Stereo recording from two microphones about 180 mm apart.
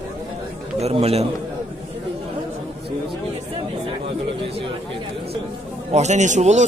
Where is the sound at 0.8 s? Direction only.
35° right (ahead or behind).